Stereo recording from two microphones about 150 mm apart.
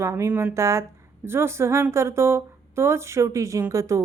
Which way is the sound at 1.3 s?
15° right (ahead or behind).